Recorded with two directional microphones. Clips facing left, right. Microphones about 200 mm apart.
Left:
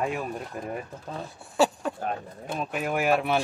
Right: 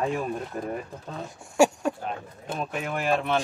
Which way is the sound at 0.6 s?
5° left (ahead or behind).